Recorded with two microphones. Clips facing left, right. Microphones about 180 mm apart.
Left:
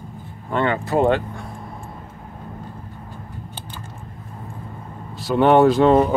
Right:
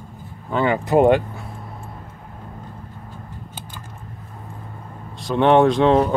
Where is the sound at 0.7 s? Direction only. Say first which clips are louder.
Right 5 dB; 15° right (ahead or behind).